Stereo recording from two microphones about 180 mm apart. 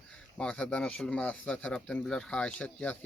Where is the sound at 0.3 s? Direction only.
5° left (ahead or behind).